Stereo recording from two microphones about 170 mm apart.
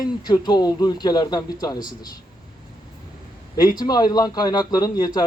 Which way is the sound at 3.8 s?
25° left (ahead or behind).